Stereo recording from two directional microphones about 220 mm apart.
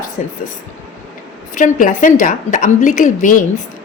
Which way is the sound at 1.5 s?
35° left (ahead or behind).